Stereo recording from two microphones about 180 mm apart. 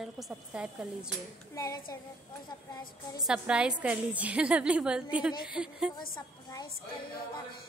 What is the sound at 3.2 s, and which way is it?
A woman's voice, 5° right (ahead or behind).